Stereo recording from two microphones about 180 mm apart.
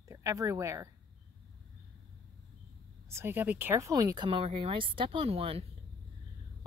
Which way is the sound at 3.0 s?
15° right (ahead or behind).